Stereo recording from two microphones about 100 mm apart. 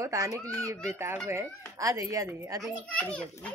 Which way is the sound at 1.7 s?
35° right (ahead or behind).